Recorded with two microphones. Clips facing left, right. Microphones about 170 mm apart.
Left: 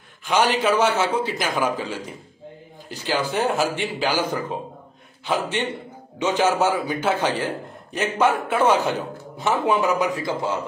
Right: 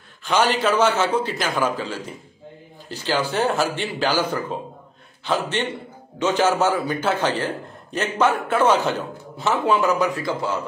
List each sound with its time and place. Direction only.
0.2 s a man's voice: 15° left (ahead or behind)